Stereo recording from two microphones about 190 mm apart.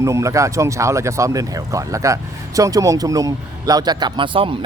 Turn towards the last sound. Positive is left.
turn(degrees=-25)  # may be behind; listen again after turning